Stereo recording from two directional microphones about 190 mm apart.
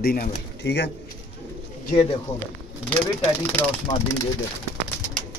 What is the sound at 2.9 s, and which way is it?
Speech, 10° left (ahead or behind).